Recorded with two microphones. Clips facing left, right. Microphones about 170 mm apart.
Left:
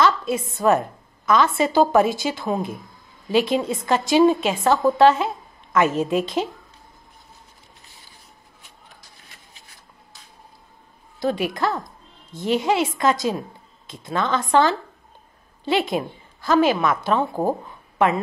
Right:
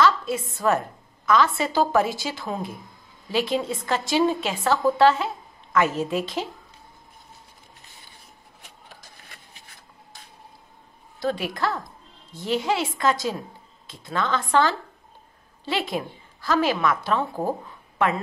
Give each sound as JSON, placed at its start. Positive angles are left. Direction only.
{"t": 0.0, "sound": "a woman's voice", "side_deg": 20}
{"t": 11.1, "sound": "a woman's voice", "side_deg": 15}